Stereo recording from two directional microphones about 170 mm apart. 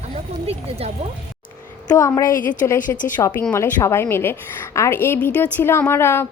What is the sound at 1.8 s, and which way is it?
Speech, 20° left (ahead or behind).